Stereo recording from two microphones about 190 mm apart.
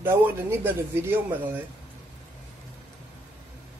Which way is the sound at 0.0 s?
10° right (ahead or behind).